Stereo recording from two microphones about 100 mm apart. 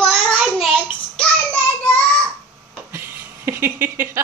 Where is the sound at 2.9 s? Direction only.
25° right (ahead or behind).